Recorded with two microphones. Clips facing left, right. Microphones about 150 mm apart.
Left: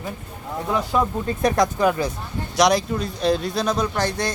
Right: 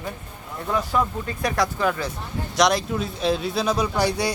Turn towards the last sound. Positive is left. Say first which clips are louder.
# right 1 dB
turn(degrees=-10)  # may be behind; listen again after turning